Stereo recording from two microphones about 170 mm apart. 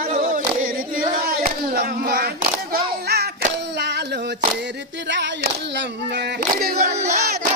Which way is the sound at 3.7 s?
80° right.